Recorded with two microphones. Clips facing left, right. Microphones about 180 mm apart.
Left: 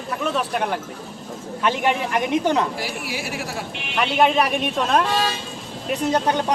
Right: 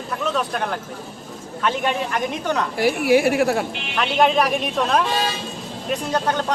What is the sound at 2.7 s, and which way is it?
Speech, 55° right (ahead or behind).